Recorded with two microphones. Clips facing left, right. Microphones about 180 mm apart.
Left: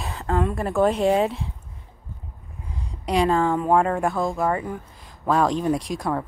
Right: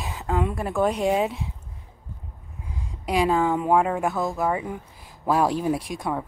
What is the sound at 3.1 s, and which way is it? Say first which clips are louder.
Speech: left 1 dB; 5° right (ahead or behind).